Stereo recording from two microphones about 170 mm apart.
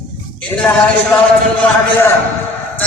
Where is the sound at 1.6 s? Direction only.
15° left (ahead or behind).